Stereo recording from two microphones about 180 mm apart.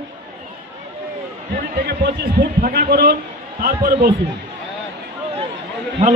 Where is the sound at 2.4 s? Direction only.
55° right (ahead or behind).